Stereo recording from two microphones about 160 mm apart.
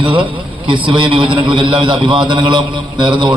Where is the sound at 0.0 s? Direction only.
30° right (ahead or behind).